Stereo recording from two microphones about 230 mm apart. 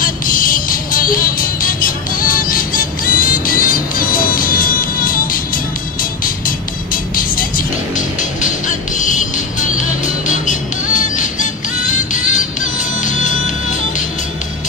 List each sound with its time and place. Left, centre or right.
0.0 s music: left